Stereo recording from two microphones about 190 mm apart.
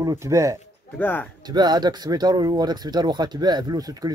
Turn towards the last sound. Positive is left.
turn(degrees=-20)  # may be behind; listen again after turning